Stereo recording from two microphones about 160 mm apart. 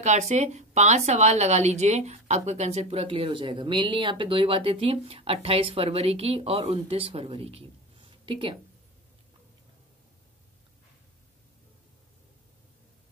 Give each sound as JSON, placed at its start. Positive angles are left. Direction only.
{"t": 0.0, "sound": "a woman's voice", "side_deg": -45}